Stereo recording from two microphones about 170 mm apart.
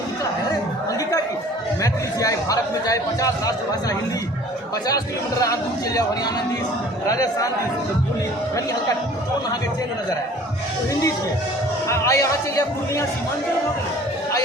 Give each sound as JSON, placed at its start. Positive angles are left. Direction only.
{"t": 1.8, "sound": "chatter", "side_deg": 20}
{"t": 4.9, "sound": "speech", "side_deg": 20}
{"t": 11.9, "sound": "speech", "side_deg": 20}